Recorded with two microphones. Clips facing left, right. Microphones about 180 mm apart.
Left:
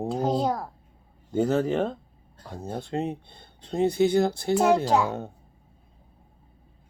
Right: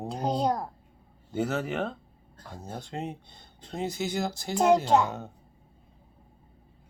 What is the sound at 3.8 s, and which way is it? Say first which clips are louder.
Speech: left 10 dB; 60° left (ahead or behind).